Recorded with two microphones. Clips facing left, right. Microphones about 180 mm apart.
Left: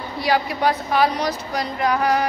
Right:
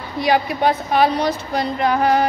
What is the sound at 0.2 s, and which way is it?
Speech, 20° right (ahead or behind).